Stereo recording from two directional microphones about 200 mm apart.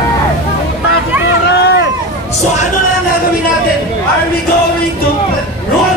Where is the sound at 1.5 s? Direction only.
55° left (ahead or behind).